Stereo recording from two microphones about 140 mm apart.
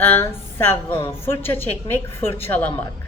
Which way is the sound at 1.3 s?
15° left (ahead or behind).